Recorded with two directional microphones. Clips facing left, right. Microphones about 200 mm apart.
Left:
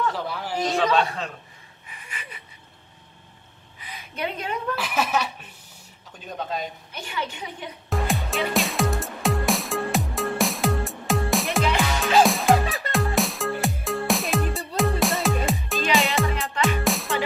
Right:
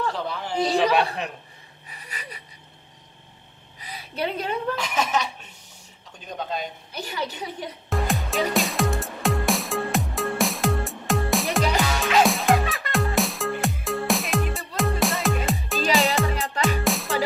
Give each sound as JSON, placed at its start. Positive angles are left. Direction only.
{"t": 0.1, "sound": "a man's voice", "side_deg": 5}
{"t": 0.7, "sound": "a man's voice", "side_deg": -15}
{"t": 1.9, "sound": "a sound", "side_deg": -35}
{"t": 3.8, "sound": "a woman's voice", "side_deg": -35}
{"t": 4.7, "sound": "speech", "side_deg": 5}
{"t": 6.9, "sound": "a woman's voice", "side_deg": -35}
{"t": 7.9, "sound": "music", "side_deg": 0}